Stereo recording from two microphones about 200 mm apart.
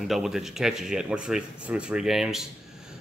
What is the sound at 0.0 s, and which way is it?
Speech, centre (ahead or behind).